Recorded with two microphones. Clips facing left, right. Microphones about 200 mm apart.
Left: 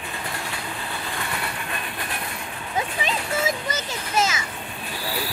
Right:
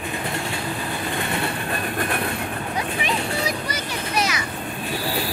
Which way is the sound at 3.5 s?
25° left (ahead or behind).